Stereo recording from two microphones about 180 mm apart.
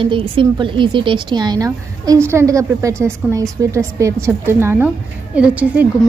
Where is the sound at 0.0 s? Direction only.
30° right (ahead or behind).